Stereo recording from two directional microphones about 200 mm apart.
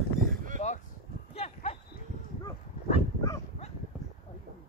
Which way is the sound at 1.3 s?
30° left (ahead or behind).